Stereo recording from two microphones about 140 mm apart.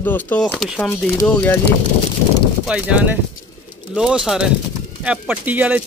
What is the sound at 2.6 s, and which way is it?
Speech, 5° right (ahead or behind).